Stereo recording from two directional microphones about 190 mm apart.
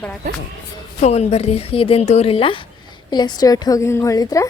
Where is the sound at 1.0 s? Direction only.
35° left (ahead or behind).